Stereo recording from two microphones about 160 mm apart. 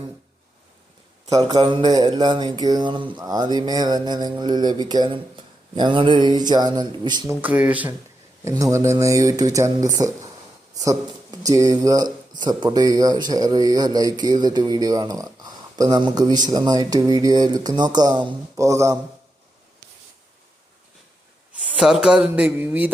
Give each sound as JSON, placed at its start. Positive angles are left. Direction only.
{"t": 1.3, "sound": "mantra", "side_deg": -20}
{"t": 7.4, "sound": "speech", "side_deg": -10}
{"t": 8.4, "sound": "mantra", "side_deg": -20}
{"t": 10.8, "sound": "speech", "side_deg": -20}
{"t": 12.4, "sound": "mantra", "side_deg": -25}
{"t": 21.5, "sound": "speech", "side_deg": -10}